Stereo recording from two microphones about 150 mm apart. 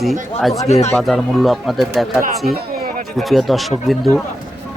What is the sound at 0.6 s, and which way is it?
Speech, 45° left (ahead or behind).